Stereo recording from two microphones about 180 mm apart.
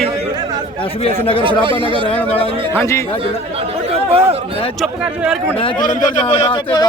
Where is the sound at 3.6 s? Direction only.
30° right (ahead or behind).